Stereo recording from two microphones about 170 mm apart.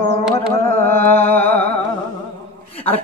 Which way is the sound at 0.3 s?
35° left (ahead or behind).